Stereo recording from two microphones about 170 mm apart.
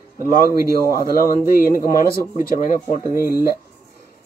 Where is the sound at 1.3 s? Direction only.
55° left (ahead or behind).